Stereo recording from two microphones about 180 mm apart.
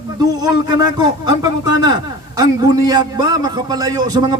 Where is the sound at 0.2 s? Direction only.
20° right (ahead or behind).